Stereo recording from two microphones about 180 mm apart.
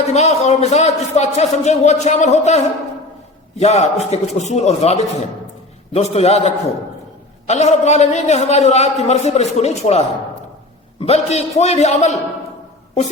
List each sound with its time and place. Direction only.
0.0 s a man's voice: 40° left (ahead or behind)
3.6 s a man's voice: 40° left (ahead or behind)